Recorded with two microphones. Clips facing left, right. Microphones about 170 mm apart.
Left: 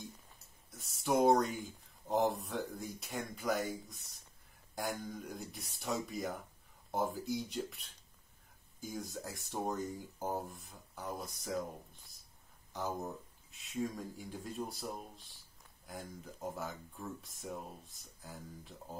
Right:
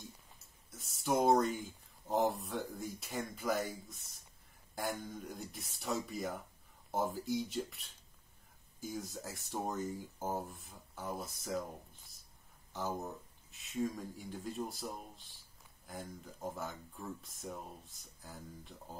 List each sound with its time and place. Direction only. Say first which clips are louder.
0.7 s speech: left 1 dB; centre (ahead or behind)